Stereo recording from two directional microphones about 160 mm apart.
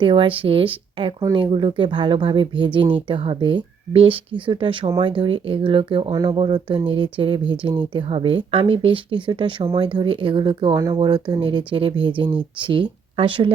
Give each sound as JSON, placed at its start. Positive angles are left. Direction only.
{"t": 0.0, "sound": "speech", "side_deg": -30}